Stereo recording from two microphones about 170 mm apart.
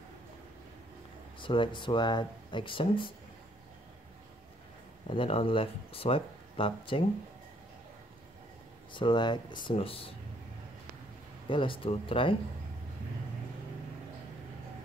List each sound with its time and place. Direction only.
1.4 s speech: 30° left (ahead or behind)
5.1 s speech: 35° left (ahead or behind)
8.9 s speech: 30° left (ahead or behind)
11.4 s speech: 30° left (ahead or behind)